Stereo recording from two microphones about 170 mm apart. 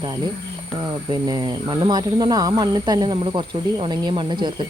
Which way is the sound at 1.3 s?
25° right (ahead or behind).